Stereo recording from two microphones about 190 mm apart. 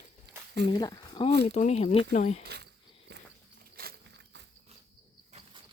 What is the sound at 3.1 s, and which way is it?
Walk, 65° right (ahead or behind).